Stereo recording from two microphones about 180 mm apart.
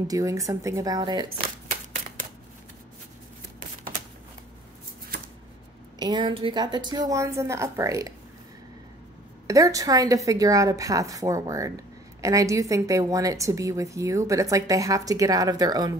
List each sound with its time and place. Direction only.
0.1 s speech: 20° right (ahead or behind)
5.9 s speech: 25° right (ahead or behind)
9.5 s a woman's voice: 20° right (ahead or behind)